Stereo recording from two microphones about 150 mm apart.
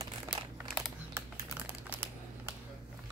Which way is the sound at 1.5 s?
15° right (ahead or behind).